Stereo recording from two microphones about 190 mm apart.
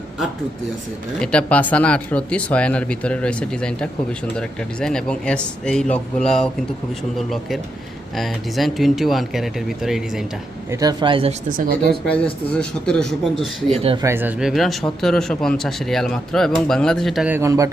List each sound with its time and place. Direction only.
1.2 s speech: 5° left (ahead or behind)
10.7 s speech: 20° right (ahead or behind)
11.5 s speech: 50° right (ahead or behind)
12.0 s speech: 5° left (ahead or behind)
13.7 s speech: 30° right (ahead or behind)
14.0 s speech: 10° right (ahead or behind)